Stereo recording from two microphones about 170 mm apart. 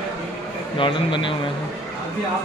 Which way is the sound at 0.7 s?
30° left (ahead or behind).